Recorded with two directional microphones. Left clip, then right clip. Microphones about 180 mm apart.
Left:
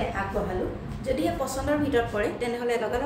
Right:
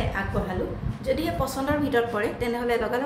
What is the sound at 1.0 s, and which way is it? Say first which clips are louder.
A woman's voice: right 1 dB; 45° right (ahead or behind).